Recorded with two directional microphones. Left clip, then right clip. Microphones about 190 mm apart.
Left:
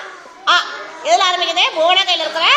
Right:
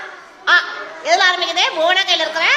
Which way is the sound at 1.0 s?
20° right (ahead or behind).